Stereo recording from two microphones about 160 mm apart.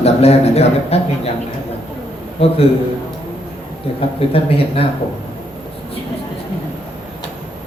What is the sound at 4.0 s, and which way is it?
Speech, 35° left (ahead or behind).